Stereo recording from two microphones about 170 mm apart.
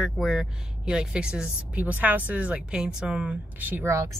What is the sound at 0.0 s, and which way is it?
A woman's voice, centre (ahead or behind).